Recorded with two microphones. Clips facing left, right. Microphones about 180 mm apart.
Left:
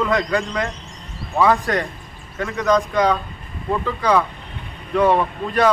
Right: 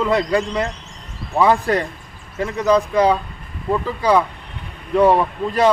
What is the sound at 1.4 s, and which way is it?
Speech, 30° right (ahead or behind).